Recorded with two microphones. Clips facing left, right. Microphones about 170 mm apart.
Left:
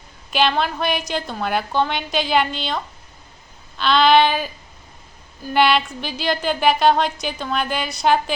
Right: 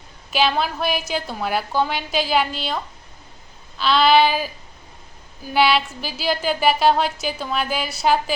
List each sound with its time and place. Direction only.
0.3 s a woman's voice: 5° right (ahead or behind)